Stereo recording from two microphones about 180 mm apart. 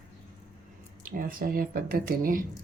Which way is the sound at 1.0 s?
50° right (ahead or behind).